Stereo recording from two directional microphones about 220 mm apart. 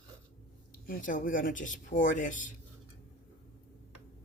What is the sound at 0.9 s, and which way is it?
Speech, 35° left (ahead or behind).